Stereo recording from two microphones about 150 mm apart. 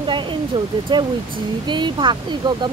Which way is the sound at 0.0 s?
30° right (ahead or behind).